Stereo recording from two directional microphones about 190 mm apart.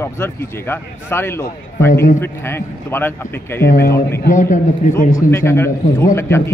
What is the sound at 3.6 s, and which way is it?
Speech, 55° left (ahead or behind).